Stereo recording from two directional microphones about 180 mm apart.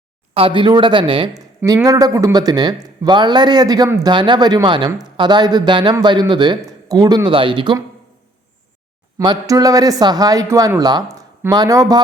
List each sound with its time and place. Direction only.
0.3 s speech: 30° right (ahead or behind)
9.1 s speech: 20° right (ahead or behind)